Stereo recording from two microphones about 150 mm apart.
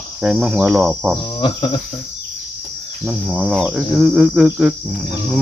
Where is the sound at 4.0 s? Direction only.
5° right (ahead or behind).